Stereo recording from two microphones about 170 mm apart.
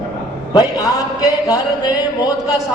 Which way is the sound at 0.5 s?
20° left (ahead or behind).